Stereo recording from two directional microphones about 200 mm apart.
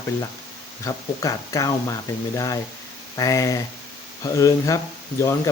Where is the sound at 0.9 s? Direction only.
15° left (ahead or behind).